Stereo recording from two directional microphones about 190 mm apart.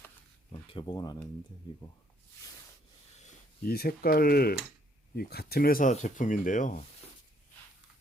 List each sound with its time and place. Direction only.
0.5 s speech: 25° left (ahead or behind)
3.2 s a sound: 40° left (ahead or behind)
3.7 s speech: 55° left (ahead or behind)